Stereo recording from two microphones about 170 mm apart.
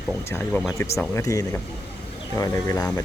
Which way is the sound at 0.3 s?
15° left (ahead or behind).